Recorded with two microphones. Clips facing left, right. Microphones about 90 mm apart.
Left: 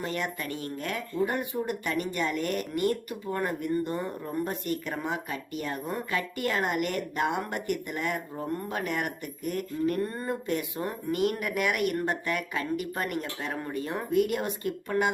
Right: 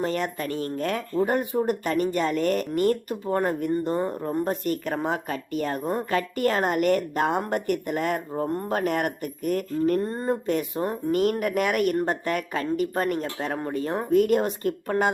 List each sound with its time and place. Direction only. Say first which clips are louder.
0.0 s speech: right 6 dB; 40° right (ahead or behind)
8.4 s speech: right 5 dB; 35° right (ahead or behind)
10.0 s speech: right 5 dB; 25° right (ahead or behind)
10.4 s speech: right 5 dB; 40° right (ahead or behind)